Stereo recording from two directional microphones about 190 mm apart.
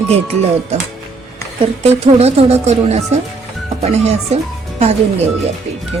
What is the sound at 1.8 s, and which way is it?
Speech, 35° right (ahead or behind).